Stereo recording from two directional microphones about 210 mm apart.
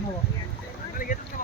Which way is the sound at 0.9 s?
40° left (ahead or behind).